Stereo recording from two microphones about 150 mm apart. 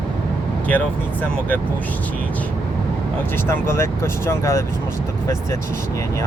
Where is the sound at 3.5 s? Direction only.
20° left (ahead or behind).